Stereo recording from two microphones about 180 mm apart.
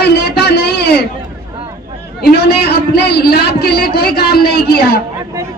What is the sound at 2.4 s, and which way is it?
A man's voice, 60° left (ahead or behind).